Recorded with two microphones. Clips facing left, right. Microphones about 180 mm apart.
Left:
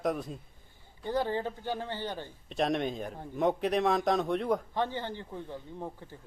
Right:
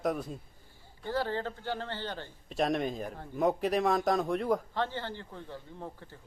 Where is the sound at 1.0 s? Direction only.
15° left (ahead or behind).